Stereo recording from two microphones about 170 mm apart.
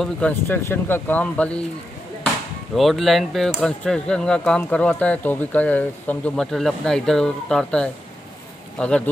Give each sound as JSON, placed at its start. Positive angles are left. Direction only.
{"t": 0.0, "sound": "speech", "side_deg": 10}
{"t": 2.7, "sound": "speech", "side_deg": 0}